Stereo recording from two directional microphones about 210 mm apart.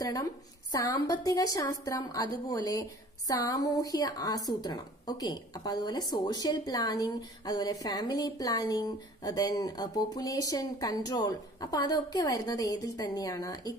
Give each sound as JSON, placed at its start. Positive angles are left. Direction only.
{"t": 0.0, "sound": "a woman's voice", "side_deg": 15}